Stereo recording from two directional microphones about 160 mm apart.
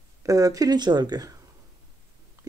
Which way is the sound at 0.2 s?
20° right (ahead or behind).